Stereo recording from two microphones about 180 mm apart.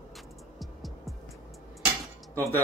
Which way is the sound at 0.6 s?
Centre (ahead or behind).